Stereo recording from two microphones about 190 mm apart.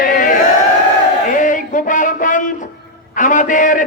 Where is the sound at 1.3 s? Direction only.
45° left (ahead or behind).